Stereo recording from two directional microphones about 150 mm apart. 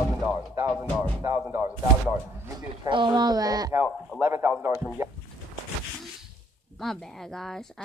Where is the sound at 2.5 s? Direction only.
30° right (ahead or behind).